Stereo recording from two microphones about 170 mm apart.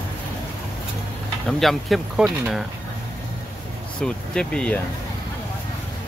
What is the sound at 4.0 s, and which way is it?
Speech, 5° left (ahead or behind).